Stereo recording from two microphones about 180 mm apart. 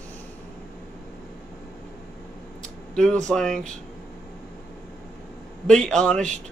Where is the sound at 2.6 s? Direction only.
5° left (ahead or behind).